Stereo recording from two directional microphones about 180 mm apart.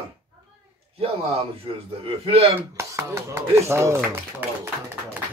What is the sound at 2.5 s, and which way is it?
Speech, 15° right (ahead or behind).